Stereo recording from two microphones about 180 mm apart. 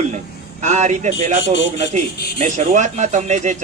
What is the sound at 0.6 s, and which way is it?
Speech, 40° right (ahead or behind).